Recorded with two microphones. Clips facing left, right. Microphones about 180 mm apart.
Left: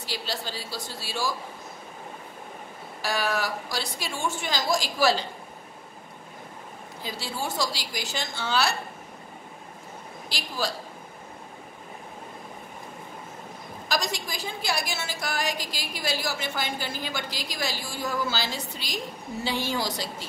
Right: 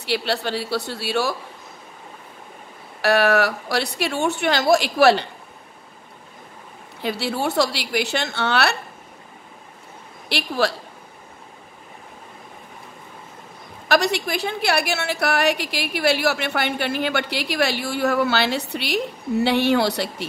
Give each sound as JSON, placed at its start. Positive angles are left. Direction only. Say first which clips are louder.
{"t": 0.0, "sound": "a woman's voice", "louder": "right 10 dB", "side_deg": -65}
{"t": 3.0, "sound": "a woman's voice", "louder": "right 10 dB", "side_deg": -65}
{"t": 7.0, "sound": "a woman's voice", "louder": "right 9 dB", "side_deg": -65}
{"t": 10.3, "sound": "a woman's voice", "louder": "right 9 dB", "side_deg": -65}
{"t": 13.8, "sound": "a woman's voice", "louder": "right 10 dB", "side_deg": -65}